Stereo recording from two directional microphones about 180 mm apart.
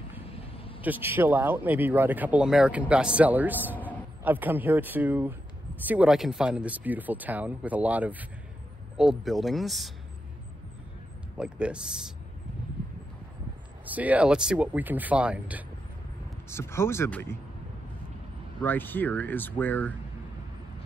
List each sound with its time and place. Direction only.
0.4 s a sound: 30° left (ahead or behind)
0.8 s speech: 10° right (ahead or behind)
11.3 s speech: 5° right (ahead or behind)
13.8 s speech: 10° right (ahead or behind)
16.4 s speech: 15° left (ahead or behind)
18.6 s speech: 10° left (ahead or behind)